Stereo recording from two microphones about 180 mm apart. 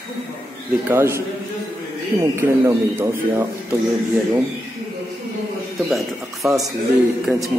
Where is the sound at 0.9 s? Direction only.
15° right (ahead or behind).